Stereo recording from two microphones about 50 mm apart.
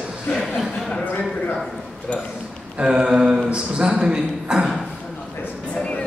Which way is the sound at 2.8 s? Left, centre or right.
Centre.